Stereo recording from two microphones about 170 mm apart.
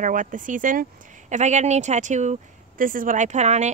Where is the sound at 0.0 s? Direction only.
50° right (ahead or behind).